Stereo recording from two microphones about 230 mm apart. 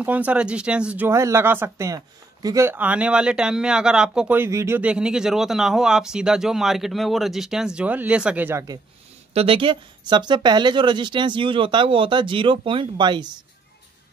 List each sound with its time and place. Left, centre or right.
0.0 s speech: centre
9.3 s speech: right